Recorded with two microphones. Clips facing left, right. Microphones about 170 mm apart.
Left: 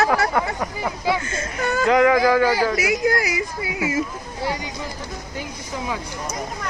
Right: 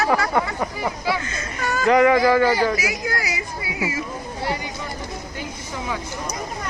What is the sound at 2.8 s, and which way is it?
Speech, 50° left (ahead or behind).